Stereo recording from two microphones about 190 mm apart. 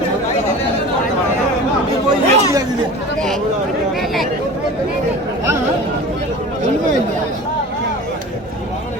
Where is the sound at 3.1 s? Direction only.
Centre (ahead or behind).